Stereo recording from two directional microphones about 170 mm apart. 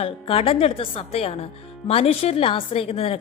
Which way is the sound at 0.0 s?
35° left (ahead or behind).